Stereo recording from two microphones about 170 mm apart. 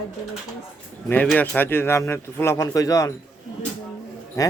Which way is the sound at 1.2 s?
10° left (ahead or behind).